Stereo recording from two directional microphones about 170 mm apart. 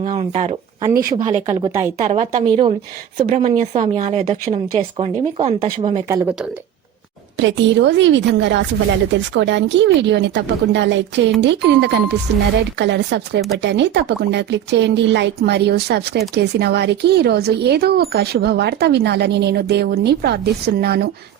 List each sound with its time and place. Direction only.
0.2 s speech: 40° right (ahead or behind)
0.8 s speech: 20° right (ahead or behind)
1.1 s speech: 35° right (ahead or behind)
2.4 s speech: 30° right (ahead or behind)
3.2 s speech: 45° right (ahead or behind)
7.3 s a woman's voice: 90° right; by 21.1 s 70° right (ahead or behind)